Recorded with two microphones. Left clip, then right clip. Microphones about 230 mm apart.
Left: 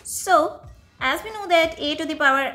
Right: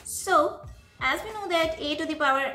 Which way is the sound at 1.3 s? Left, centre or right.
Left.